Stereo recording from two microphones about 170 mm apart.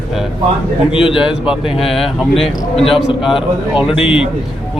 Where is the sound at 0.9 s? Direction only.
30° left (ahead or behind).